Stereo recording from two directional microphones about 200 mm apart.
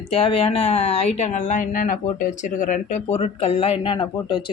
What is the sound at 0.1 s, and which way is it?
Speech, 30° left (ahead or behind).